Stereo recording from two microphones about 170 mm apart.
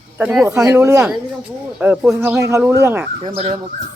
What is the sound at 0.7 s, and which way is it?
Speech, 15° right (ahead or behind).